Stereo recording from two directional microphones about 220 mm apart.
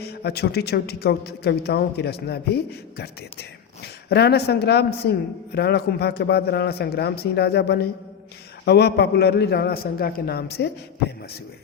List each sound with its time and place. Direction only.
0.2 s a man's voice: 45° left (ahead or behind)